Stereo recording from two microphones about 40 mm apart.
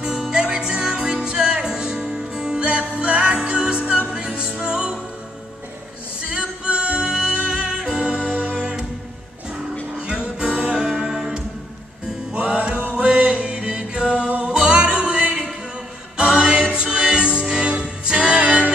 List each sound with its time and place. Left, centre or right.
0.2 s music: centre
6.3 s music: right
9.9 s music: right
14.5 s music: right